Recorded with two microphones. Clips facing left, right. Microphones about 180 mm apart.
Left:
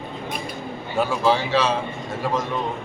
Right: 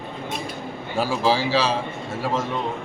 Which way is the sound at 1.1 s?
30° right (ahead or behind).